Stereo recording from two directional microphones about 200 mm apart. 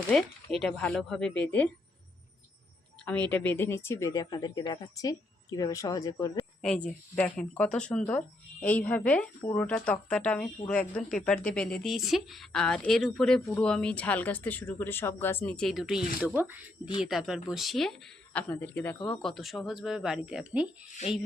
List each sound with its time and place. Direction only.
0.5 s a woman's voice: 5° left (ahead or behind)
3.0 s a woman's voice: 5° left (ahead or behind)
6.6 s a woman's voice: 5° left (ahead or behind)